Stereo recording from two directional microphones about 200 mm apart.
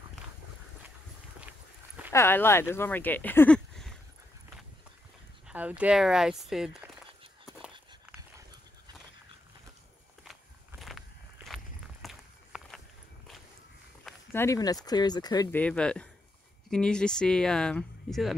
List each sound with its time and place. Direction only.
2.1 s speech: 10° left (ahead or behind)
5.5 s speech: 5° right (ahead or behind)
10.8 s walk: centre (ahead or behind)
14.0 s speech: 10° left (ahead or behind)
15.6 s speech: 5° left (ahead or behind)